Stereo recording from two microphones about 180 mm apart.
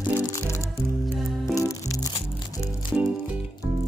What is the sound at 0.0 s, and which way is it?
Music, 15° left (ahead or behind).